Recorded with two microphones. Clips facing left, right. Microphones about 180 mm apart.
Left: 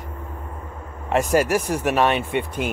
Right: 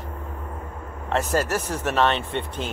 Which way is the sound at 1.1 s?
15° left (ahead or behind).